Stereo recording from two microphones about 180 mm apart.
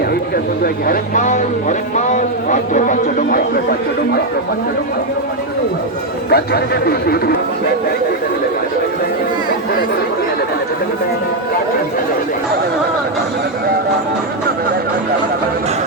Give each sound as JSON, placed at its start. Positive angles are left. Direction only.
{"t": 0.6, "sound": "speech", "side_deg": 50}
{"t": 6.3, "sound": "a man's voice", "side_deg": 60}